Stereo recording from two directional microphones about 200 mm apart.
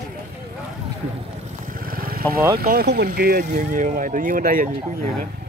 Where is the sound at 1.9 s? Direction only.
45° right (ahead or behind).